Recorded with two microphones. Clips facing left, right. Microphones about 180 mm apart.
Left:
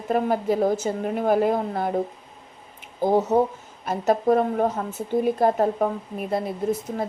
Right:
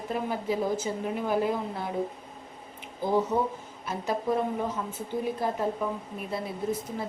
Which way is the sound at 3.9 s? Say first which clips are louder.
Left 8 dB; 60° left (ahead or behind).